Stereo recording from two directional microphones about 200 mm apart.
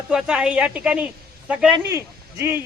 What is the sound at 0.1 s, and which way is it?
Speech, 5° right (ahead or behind).